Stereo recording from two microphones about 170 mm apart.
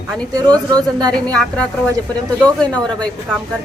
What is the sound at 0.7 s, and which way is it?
Speech, 20° right (ahead or behind).